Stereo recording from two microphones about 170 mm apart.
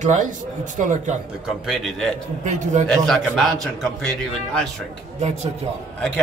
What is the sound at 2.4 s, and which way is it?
Speech, 45° right (ahead or behind).